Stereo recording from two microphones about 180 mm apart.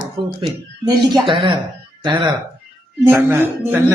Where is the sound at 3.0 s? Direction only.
10° right (ahead or behind).